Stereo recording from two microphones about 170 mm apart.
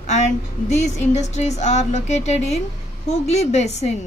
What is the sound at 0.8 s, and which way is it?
A woman's voice, 40° left (ahead or behind).